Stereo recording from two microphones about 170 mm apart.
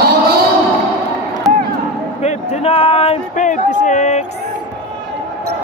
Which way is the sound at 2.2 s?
35° left (ahead or behind).